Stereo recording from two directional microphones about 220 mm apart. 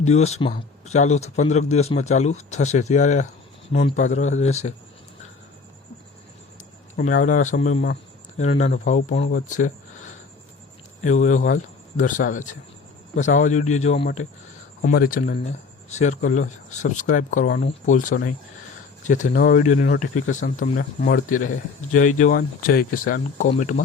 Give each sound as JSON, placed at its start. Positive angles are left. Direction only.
{"t": 0.0, "sound": "speech", "side_deg": 30}
{"t": 6.9, "sound": "speech", "side_deg": 40}
{"t": 11.0, "sound": "speech", "side_deg": 35}